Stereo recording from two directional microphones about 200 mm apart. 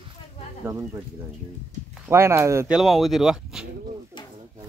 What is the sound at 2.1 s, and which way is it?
Speech, 15° right (ahead or behind).